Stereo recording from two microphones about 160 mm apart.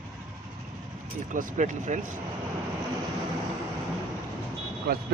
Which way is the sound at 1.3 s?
55° right (ahead or behind).